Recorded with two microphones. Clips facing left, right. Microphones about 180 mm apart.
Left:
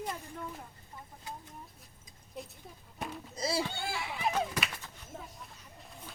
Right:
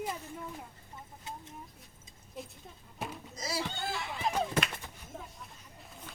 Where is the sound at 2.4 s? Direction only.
Centre (ahead or behind).